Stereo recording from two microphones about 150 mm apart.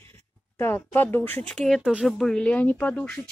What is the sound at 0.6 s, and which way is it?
Speech, 15° left (ahead or behind).